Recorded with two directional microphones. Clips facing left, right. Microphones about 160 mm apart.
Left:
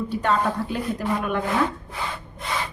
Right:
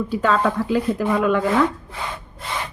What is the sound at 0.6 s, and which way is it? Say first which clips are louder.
Speech: right 6 dB; 90° right.